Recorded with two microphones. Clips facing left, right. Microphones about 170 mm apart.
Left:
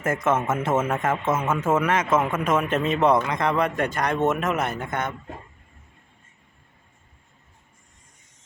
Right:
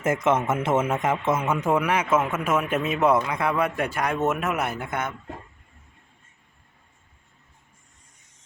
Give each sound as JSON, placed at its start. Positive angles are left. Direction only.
{"t": 0.0, "sound": "a man's voice", "side_deg": -20}